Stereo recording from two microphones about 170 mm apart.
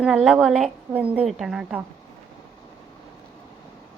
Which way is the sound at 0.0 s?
Centre (ahead or behind).